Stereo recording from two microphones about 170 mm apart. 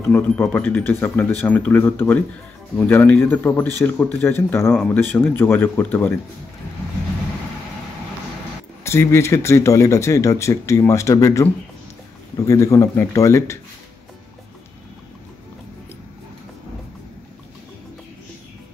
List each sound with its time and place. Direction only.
0.1 s speech: 10° left (ahead or behind)
8.8 s speech: 15° left (ahead or behind)